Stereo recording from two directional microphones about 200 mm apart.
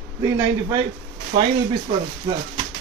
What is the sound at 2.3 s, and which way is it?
Speech, 20° right (ahead or behind).